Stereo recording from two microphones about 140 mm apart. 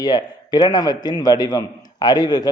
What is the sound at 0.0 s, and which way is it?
A man's voice, 30° left (ahead or behind).